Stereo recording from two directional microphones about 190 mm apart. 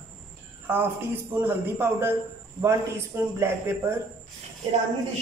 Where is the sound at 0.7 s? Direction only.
10° right (ahead or behind).